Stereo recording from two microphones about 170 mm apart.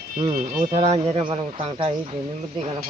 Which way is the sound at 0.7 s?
35° right (ahead or behind).